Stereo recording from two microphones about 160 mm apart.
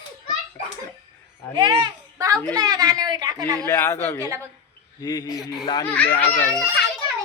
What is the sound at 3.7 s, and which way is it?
Speech, 15° left (ahead or behind).